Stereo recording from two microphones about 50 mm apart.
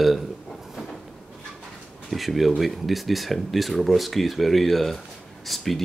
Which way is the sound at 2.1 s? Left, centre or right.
Centre.